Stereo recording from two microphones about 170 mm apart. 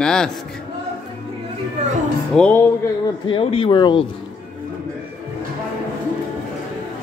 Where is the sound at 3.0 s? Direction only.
30° left (ahead or behind).